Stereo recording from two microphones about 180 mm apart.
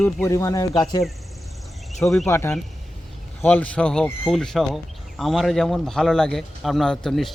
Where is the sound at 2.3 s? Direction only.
15° left (ahead or behind).